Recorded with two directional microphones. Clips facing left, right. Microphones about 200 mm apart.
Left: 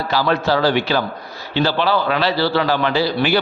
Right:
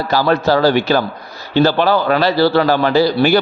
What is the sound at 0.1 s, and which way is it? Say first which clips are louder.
A man's voice: right 4 dB; 45° right (ahead or behind).